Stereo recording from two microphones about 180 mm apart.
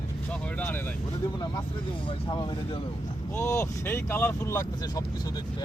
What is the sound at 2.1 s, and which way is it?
Speech, 25° left (ahead or behind).